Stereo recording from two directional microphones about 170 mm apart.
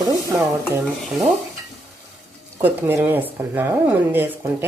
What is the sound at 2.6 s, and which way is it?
Speech, 10° right (ahead or behind).